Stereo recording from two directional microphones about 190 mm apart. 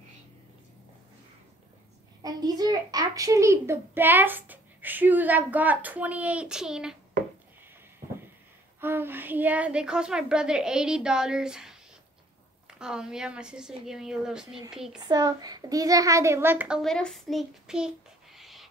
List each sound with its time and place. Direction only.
2.2 s a child's voice: 20° right (ahead or behind); by 7.0 s 5° right (ahead or behind)
8.0 s a sound: 35° right (ahead or behind)
8.8 s a woman's voice: 10° right (ahead or behind)
15.0 s a child's voice: 20° right (ahead or behind); by 18.7 s centre (ahead or behind)